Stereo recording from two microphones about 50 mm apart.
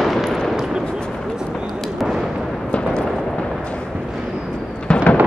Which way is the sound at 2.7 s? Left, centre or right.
Left.